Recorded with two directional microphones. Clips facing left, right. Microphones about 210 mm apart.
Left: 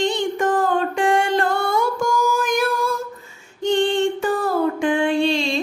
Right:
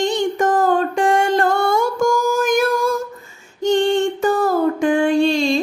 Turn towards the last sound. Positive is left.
turn(degrees=-45)  # may be behind; listen again after turning